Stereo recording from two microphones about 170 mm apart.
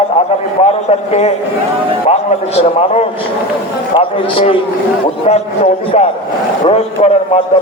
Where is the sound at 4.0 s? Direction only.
30° left (ahead or behind).